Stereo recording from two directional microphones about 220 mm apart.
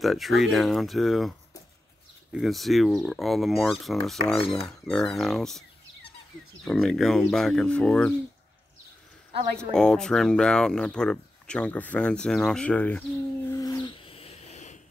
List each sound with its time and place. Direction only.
0.0 s speech: centre (ahead or behind)
2.3 s speech: centre (ahead or behind)
6.6 s speech: centre (ahead or behind)
9.6 s speech: 5° left (ahead or behind)
13.5 s a sound: 15° left (ahead or behind); by 14.8 s 30° left (ahead or behind)